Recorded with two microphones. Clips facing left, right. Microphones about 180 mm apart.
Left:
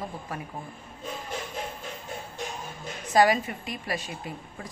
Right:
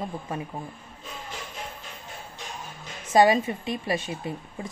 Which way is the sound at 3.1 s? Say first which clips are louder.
Right 3 dB; 25° right (ahead or behind).